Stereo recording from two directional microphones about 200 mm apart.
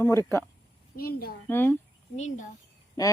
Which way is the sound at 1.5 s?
10° left (ahead or behind).